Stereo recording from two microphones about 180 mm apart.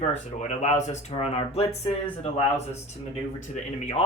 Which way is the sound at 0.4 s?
40° left (ahead or behind).